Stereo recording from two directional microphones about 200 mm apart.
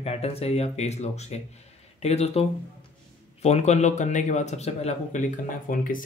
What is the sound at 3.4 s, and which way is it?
Speech, 35° left (ahead or behind).